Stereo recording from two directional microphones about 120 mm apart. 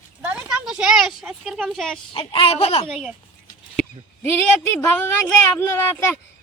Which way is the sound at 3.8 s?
Centre (ahead or behind).